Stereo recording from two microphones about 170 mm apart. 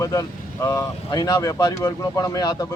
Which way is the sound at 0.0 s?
20° left (ahead or behind).